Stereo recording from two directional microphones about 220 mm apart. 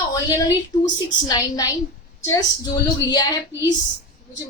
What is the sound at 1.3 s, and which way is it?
A woman's voice, 15° left (ahead or behind).